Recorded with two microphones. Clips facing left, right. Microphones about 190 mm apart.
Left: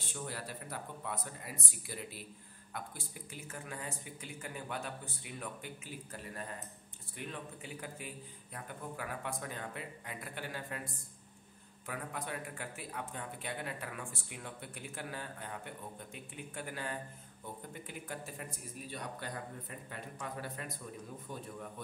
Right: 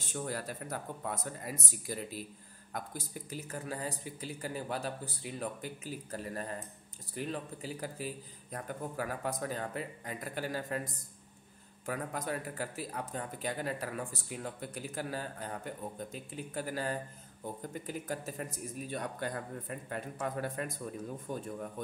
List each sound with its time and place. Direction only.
0.0 s speech: 45° right (ahead or behind)